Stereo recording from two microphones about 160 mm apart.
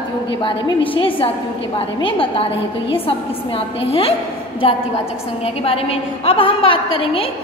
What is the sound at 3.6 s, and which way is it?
Speech, 35° left (ahead or behind).